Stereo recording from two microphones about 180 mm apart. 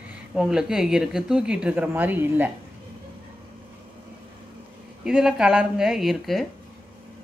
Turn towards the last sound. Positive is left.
turn(degrees=0)  # may be behind; listen again after turning